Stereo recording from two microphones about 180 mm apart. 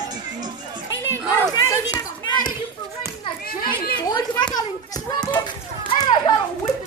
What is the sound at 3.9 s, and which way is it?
Children playing, 25° left (ahead or behind).